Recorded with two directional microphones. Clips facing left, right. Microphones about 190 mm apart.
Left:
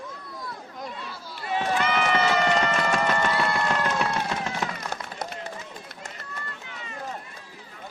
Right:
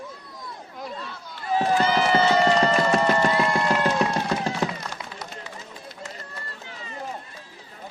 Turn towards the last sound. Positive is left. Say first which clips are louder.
# right 1 dB
turn(degrees=-35)  # may be behind; listen again after turning